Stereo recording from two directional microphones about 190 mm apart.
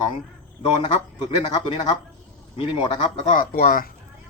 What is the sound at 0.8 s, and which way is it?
Speech, 30° left (ahead or behind).